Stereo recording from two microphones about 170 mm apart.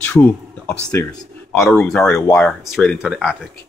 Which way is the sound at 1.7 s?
5° left (ahead or behind).